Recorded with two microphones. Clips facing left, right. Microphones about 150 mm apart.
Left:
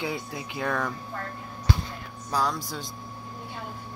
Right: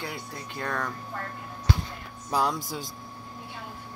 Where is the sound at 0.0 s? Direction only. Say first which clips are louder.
Left 5 dB; 10° left (ahead or behind).